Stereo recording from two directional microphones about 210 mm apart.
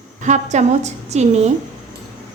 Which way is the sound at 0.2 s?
35° right (ahead or behind).